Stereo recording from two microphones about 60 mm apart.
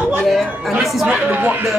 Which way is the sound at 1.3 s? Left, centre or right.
Right.